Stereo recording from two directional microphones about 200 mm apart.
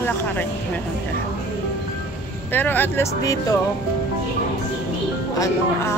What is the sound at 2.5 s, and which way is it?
Speech, 10° left (ahead or behind).